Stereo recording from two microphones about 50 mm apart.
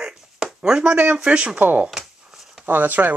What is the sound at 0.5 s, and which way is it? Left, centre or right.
Speech, centre.